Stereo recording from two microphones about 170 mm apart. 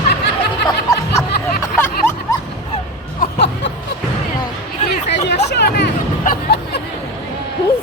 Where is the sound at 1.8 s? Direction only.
15° left (ahead or behind).